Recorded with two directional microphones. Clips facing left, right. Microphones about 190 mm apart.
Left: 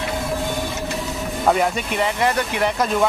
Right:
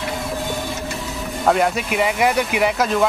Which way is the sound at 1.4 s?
Centre (ahead or behind).